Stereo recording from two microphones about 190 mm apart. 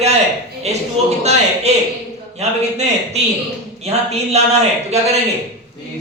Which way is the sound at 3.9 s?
35° right (ahead or behind).